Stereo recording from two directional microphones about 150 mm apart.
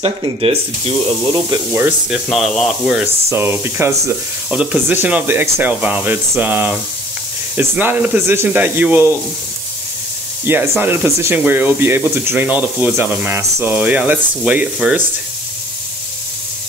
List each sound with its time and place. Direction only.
0.0 s speech: 40° right (ahead or behind)
1.7 s speech: 10° right (ahead or behind)
3.3 s speech: 15° right (ahead or behind)
10.4 s speech: 15° right (ahead or behind)